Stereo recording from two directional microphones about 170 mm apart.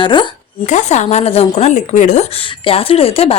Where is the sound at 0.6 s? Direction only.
45° left (ahead or behind).